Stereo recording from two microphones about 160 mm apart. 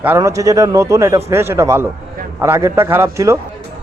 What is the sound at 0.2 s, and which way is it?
A man's voice, 20° right (ahead or behind).